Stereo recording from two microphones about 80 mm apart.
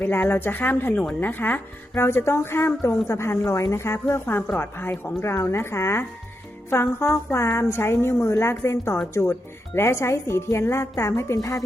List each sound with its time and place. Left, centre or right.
0.0 s speech: left